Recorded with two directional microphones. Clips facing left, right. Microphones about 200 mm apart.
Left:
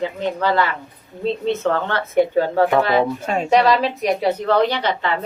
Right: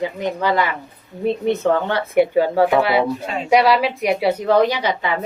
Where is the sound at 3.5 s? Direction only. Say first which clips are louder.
Right 1 dB; 10° right (ahead or behind).